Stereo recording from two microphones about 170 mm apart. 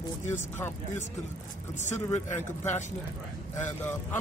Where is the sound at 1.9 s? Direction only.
15° left (ahead or behind).